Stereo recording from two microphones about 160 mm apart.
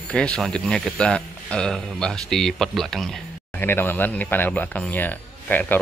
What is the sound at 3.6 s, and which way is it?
Speech, 15° left (ahead or behind).